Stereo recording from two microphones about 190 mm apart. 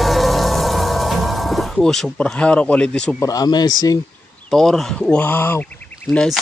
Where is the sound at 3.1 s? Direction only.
20° left (ahead or behind).